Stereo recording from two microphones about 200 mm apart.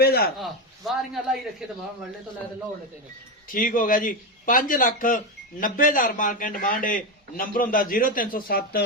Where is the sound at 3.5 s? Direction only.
45° left (ahead or behind).